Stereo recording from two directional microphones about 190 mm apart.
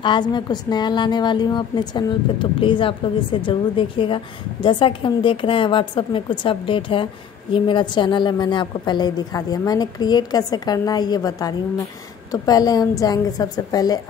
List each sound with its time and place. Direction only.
0.0 s a woman's voice: 25° left (ahead or behind)